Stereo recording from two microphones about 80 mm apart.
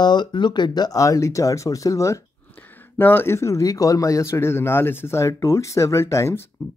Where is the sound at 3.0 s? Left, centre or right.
Left.